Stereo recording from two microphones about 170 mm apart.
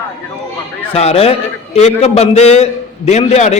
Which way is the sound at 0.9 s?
35° left (ahead or behind).